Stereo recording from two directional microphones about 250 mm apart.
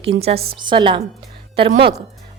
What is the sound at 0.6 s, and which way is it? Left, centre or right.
A woman's voice, centre.